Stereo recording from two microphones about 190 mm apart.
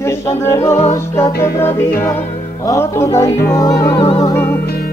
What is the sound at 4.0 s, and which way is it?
Music, 30° left (ahead or behind).